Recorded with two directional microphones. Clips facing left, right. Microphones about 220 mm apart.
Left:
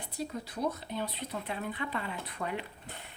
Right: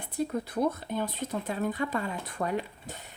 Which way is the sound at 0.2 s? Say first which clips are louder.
Right 6 dB; 55° right (ahead or behind).